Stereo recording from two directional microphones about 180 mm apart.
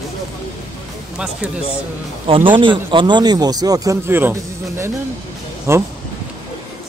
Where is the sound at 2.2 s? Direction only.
30° right (ahead or behind).